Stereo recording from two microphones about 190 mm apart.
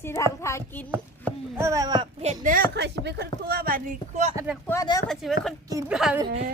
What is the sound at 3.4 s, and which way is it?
Speech, 50° right (ahead or behind).